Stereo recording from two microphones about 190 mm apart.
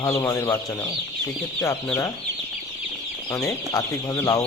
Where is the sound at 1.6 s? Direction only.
15° left (ahead or behind).